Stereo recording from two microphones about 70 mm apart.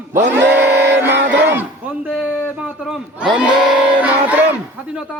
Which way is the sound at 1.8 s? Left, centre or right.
Centre.